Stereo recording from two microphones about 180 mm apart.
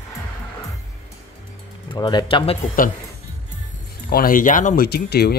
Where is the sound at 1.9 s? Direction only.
25° left (ahead or behind).